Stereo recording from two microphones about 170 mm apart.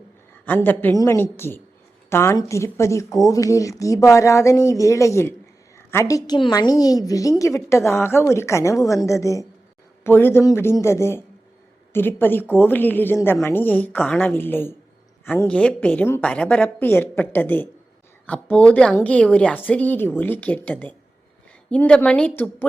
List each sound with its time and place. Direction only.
0.4 s a woman's voice: 10° left (ahead or behind)